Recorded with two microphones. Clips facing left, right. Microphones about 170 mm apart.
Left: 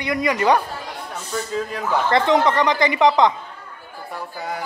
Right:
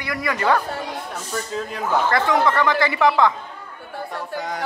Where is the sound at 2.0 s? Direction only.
25° left (ahead or behind).